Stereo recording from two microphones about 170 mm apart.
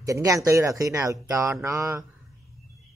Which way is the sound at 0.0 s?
20° right (ahead or behind).